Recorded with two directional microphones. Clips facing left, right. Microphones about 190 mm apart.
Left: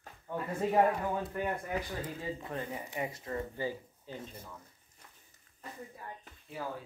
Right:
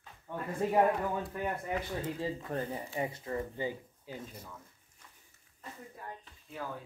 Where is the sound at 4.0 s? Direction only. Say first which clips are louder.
Even; 10° right (ahead or behind).